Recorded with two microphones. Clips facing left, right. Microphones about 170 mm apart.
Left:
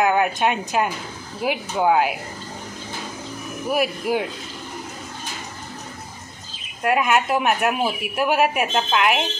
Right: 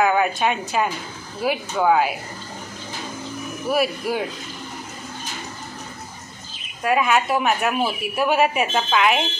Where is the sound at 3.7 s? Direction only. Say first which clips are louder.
Even; 15° left (ahead or behind).